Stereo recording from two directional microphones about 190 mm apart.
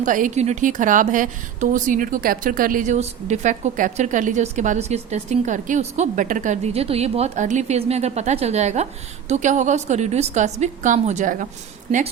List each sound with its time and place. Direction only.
0.0 s a woman's voice: 45° right (ahead or behind)